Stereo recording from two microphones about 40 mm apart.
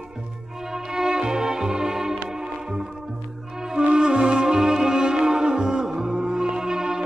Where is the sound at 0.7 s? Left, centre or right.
Centre.